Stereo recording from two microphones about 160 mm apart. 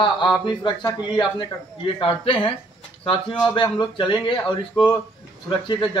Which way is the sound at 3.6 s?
30° left (ahead or behind).